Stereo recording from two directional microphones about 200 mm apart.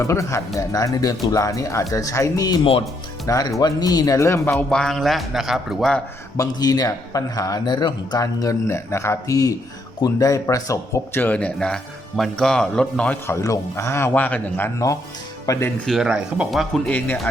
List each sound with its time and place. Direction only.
0.0 s speech: 15° left (ahead or behind)
4.5 s a man's voice: 5° left (ahead or behind)
6.3 s speech: 20° left (ahead or behind)
15.9 s a man's voice: 5° right (ahead or behind)